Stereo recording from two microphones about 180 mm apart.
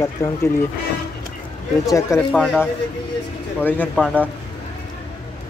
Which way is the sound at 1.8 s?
15° left (ahead or behind).